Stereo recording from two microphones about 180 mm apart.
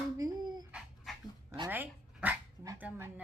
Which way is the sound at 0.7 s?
5° right (ahead or behind).